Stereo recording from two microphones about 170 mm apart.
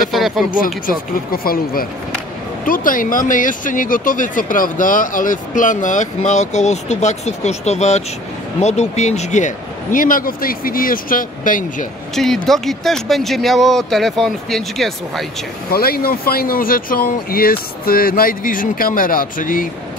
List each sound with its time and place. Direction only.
0.1 s speech: centre (ahead or behind)
0.8 s speech: 60° left (ahead or behind); by 9.5 s 45° left (ahead or behind)
9.9 s speech: 55° left (ahead or behind)
12.4 s speech: centre (ahead or behind)
15.7 s speech: 60° left (ahead or behind)